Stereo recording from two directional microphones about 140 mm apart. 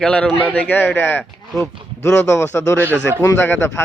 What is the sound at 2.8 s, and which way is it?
Speech, 15° right (ahead or behind).